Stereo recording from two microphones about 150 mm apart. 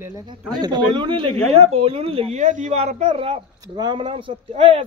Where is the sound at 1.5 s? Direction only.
40° right (ahead or behind).